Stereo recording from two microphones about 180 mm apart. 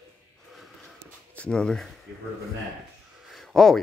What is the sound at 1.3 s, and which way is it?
Speech, 5° left (ahead or behind).